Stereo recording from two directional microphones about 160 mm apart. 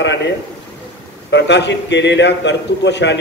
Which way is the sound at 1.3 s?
90° left.